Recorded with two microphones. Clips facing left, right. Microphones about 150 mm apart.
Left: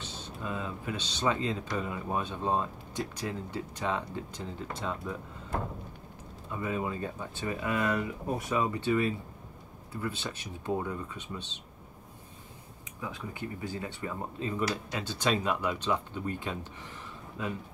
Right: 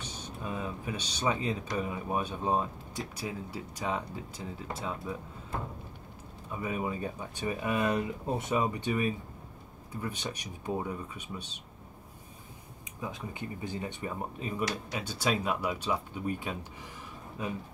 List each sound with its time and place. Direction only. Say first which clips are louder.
0.0 s speech: even; 15° right (ahead or behind)
6.5 s speech: left 1 dB; 15° right (ahead or behind)
13.0 s speech: even; 20° right (ahead or behind)